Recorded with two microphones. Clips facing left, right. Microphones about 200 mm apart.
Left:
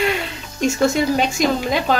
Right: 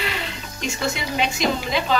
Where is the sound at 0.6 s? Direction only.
45° left (ahead or behind).